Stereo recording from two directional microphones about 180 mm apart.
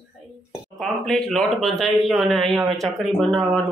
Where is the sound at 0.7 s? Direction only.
Centre (ahead or behind).